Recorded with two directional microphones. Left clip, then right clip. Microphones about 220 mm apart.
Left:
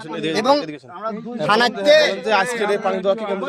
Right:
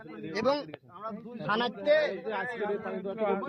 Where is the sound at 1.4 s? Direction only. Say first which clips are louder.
Left 13 dB; 5° left (ahead or behind).